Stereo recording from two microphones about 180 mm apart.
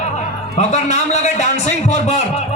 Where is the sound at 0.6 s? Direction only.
40° left (ahead or behind).